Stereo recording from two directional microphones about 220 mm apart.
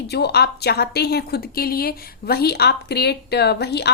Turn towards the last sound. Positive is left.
turn(degrees=50)  # may be behind; listen again after turning